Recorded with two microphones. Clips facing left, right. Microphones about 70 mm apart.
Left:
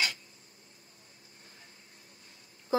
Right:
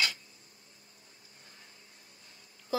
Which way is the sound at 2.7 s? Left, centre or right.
Left.